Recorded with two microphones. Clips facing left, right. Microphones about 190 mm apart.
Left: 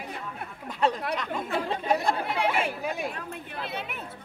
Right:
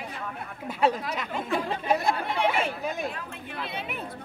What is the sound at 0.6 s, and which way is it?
Speech, 5° right (ahead or behind).